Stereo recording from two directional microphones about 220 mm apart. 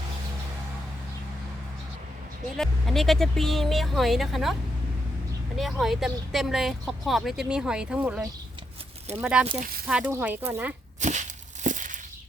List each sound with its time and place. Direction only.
2.6 s speech: centre (ahead or behind)
5.5 s speech: centre (ahead or behind)
11.0 s a sound: 35° right (ahead or behind)